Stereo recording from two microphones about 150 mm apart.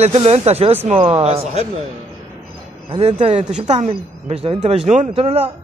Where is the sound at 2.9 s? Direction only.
40° right (ahead or behind).